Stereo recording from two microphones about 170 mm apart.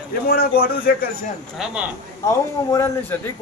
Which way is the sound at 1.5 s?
5° right (ahead or behind).